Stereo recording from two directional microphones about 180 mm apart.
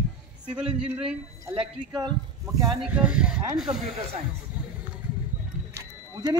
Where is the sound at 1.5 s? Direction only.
25° right (ahead or behind).